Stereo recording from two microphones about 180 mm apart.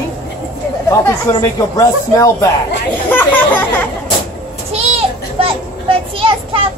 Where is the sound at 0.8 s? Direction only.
15° left (ahead or behind).